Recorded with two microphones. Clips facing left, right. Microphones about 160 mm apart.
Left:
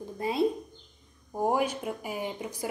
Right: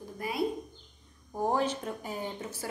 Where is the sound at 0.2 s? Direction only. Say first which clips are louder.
Left 5 dB; 25° left (ahead or behind).